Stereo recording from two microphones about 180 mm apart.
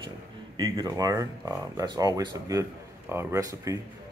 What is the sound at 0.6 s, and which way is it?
Speech, 20° right (ahead or behind).